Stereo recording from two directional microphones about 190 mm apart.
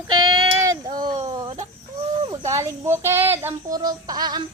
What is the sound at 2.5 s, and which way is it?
Speech, 15° right (ahead or behind).